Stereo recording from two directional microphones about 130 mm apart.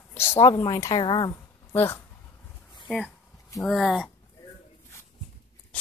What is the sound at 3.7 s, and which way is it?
Speech, centre (ahead or behind).